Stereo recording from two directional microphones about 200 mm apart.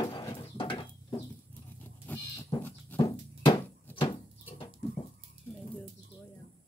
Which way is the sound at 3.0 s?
20° left (ahead or behind).